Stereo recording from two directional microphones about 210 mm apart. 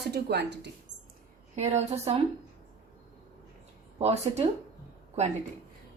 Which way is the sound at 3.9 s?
30° right (ahead or behind).